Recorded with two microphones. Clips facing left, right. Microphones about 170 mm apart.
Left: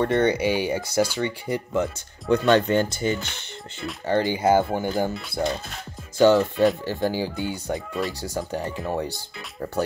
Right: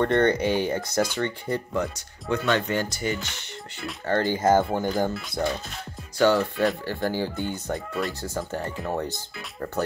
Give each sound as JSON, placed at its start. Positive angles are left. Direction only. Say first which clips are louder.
{"t": 0.0, "sound": "speech", "louder": "even", "side_deg": 10}
{"t": 2.3, "sound": "speech", "louder": "left 6 dB", "side_deg": 30}
{"t": 4.1, "sound": "speech", "louder": "left 1 dB", "side_deg": 15}
{"t": 6.1, "sound": "speech", "louder": "left 4 dB", "side_deg": 20}